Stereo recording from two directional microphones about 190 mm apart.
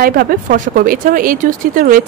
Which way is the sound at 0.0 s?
50° right (ahead or behind).